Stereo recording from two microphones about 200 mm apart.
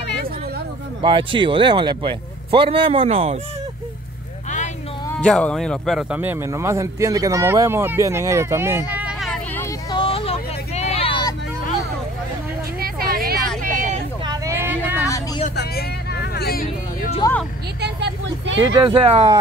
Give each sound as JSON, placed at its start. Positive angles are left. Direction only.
{"t": 1.0, "sound": "speech", "side_deg": -25}
{"t": 5.2, "sound": "a man's voice", "side_deg": 5}
{"t": 9.6, "sound": "vehicle", "side_deg": 20}
{"t": 12.8, "sound": "a sound", "side_deg": -45}
{"t": 13.6, "sound": "vehicle", "side_deg": -40}
{"t": 14.2, "sound": "vehicle", "side_deg": -15}
{"t": 15.0, "sound": "vehicle", "side_deg": 15}
{"t": 15.5, "sound": "hubbub", "side_deg": 55}
{"t": 17.7, "sound": "vehicle", "side_deg": -60}
{"t": 18.6, "sound": "speech", "side_deg": -25}